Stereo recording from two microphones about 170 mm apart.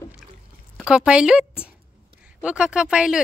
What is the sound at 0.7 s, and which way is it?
Speech, 5° right (ahead or behind).